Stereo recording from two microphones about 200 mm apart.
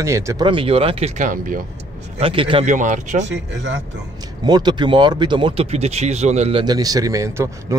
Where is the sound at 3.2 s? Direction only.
65° right (ahead or behind).